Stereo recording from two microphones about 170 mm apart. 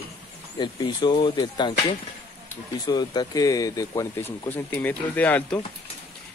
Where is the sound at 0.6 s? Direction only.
25° left (ahead or behind).